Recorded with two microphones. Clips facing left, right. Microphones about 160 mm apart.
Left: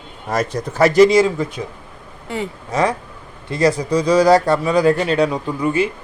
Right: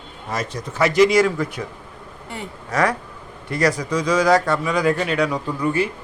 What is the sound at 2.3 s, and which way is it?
Speech, 90° left.